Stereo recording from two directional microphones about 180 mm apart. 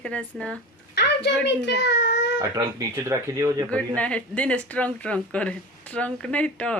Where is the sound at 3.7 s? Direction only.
5° left (ahead or behind).